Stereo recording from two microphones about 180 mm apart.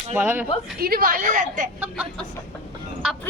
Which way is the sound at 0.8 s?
55° right (ahead or behind).